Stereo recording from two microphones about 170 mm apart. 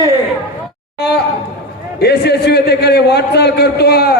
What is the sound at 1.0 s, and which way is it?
A man's voice, 75° left (ahead or behind).